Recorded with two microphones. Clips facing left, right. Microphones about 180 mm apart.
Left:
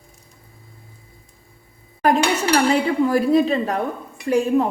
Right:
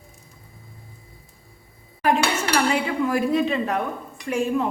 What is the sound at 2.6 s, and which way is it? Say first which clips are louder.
A woman's voice: left 4 dB; 35° left (ahead or behind).